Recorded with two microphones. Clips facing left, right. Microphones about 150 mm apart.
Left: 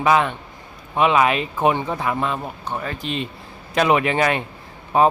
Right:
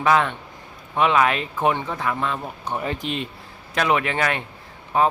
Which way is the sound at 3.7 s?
10° left (ahead or behind).